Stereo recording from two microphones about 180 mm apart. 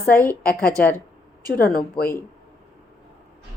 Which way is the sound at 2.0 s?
30° left (ahead or behind).